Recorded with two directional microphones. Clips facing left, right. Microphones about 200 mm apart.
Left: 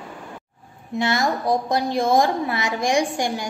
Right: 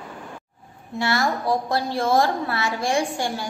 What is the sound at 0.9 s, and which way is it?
A woman's voice, 20° left (ahead or behind).